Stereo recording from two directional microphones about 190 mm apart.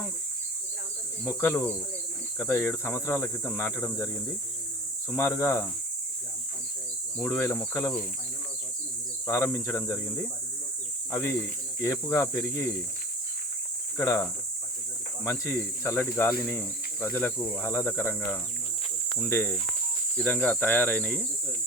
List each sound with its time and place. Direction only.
1.2 s speech: 15° left (ahead or behind)
5.1 s speech: 15° left (ahead or behind)
7.2 s speech: 10° left (ahead or behind)
9.2 s speech: 15° left (ahead or behind)
11.8 s speech: 15° left (ahead or behind)
13.9 s speech: 15° left (ahead or behind)